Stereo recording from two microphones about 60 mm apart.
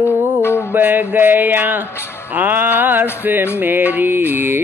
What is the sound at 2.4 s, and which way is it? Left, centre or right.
Music, right.